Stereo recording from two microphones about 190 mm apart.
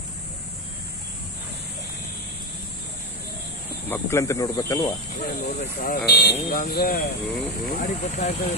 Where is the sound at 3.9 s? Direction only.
15° left (ahead or behind).